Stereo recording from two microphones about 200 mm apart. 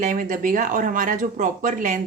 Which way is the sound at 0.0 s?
40° right (ahead or behind).